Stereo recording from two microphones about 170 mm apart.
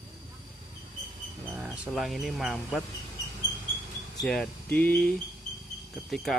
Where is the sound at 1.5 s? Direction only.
10° right (ahead or behind).